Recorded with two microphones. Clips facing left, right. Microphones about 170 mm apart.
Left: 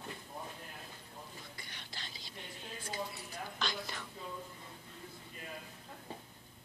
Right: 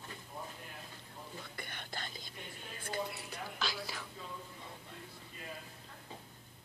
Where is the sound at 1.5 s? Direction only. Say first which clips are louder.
Right 6 dB; 55° right (ahead or behind).